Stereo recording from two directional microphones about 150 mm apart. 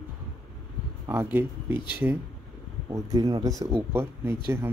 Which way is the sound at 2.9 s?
25° right (ahead or behind).